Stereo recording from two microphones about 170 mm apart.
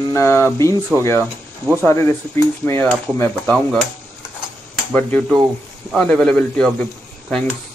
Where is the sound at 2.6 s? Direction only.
10° left (ahead or behind).